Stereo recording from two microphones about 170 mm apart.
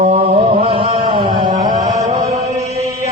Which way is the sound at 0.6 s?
30° right (ahead or behind).